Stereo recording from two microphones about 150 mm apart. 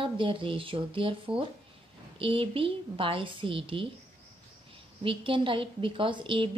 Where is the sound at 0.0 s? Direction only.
35° right (ahead or behind).